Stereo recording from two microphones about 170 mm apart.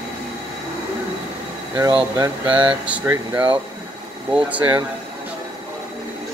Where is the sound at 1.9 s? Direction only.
25° right (ahead or behind).